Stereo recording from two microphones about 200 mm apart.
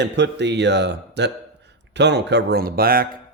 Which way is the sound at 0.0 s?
60° right (ahead or behind).